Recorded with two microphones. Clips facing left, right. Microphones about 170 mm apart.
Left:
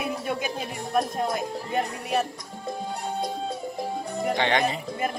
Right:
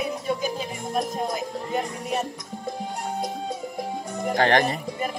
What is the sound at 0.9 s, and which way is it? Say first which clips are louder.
Speech: left 1 dB; 60° left (ahead or behind).